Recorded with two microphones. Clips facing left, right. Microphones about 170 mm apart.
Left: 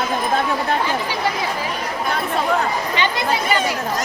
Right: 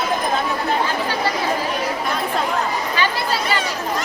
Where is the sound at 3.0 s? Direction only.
20° left (ahead or behind).